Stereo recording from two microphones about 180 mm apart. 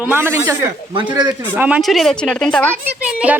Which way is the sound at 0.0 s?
15° right (ahead or behind).